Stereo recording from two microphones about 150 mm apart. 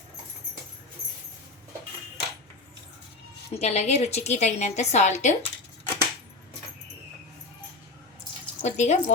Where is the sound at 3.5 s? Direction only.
45° left (ahead or behind).